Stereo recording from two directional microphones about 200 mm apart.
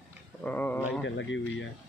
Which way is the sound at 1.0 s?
65° left (ahead or behind).